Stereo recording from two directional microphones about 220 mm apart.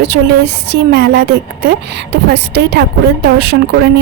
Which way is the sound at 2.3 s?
50° right (ahead or behind).